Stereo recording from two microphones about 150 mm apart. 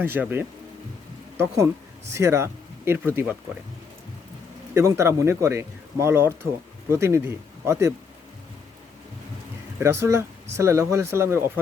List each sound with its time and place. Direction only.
0.0 s speech: 15° right (ahead or behind)
2.0 s speech: 20° right (ahead or behind)
4.7 s speech: 20° right (ahead or behind)
9.7 s speech: 20° right (ahead or behind)